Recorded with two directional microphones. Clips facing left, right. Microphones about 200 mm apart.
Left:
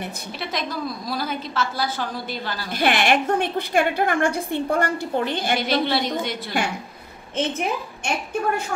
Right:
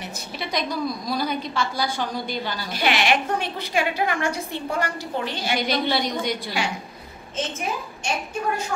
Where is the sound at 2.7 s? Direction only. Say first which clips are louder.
Left 2 dB; 50° left (ahead or behind).